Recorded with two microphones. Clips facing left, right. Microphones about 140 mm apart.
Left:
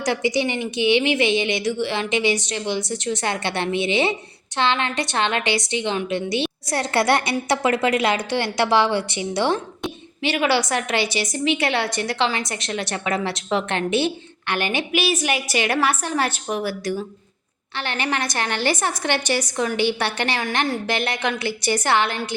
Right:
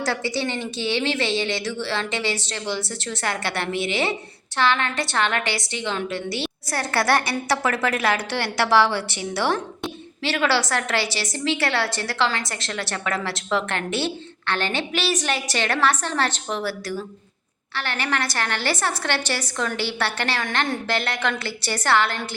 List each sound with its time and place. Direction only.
0.0 s a woman's voice: 15° left (ahead or behind)